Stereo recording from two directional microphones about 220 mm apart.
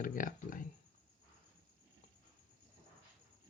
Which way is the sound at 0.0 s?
40° left (ahead or behind).